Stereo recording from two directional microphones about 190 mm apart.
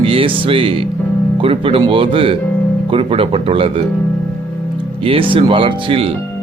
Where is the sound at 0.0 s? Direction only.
30° right (ahead or behind).